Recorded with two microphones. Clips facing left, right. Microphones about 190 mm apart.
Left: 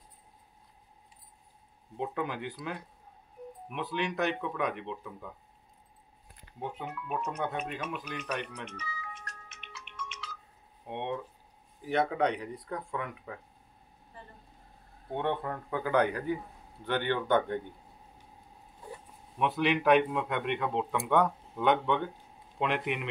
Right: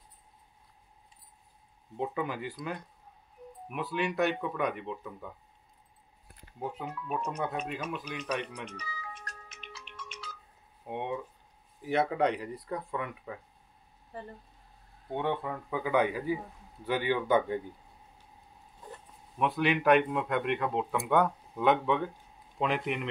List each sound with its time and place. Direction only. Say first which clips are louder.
2.0 s speech: right 1 dB; centre (ahead or behind)
6.6 s speech: right 1 dB; centre (ahead or behind)
8.6 s music: even; 35° right (ahead or behind)
10.9 s speech: even; 5° right (ahead or behind)
15.1 s speech: even; centre (ahead or behind)
19.3 s speech: even; centre (ahead or behind)